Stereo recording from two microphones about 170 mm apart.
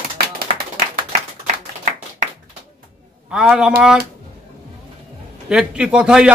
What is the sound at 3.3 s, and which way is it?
Speech, 5° right (ahead or behind).